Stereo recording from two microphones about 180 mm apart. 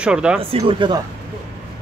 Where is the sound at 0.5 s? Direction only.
25° right (ahead or behind).